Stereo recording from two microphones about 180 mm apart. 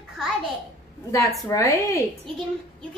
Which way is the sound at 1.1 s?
15° left (ahead or behind).